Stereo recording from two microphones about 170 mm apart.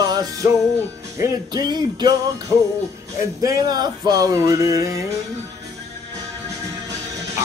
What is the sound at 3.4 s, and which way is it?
Music, 20° right (ahead or behind).